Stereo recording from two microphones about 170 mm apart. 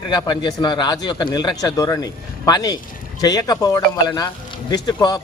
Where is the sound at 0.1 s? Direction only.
25° left (ahead or behind).